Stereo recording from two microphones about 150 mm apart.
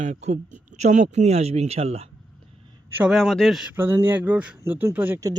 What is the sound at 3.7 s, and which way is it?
Speech, 15° right (ahead or behind).